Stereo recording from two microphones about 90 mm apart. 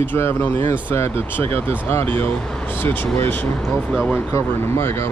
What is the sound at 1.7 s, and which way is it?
Speech, 25° left (ahead or behind).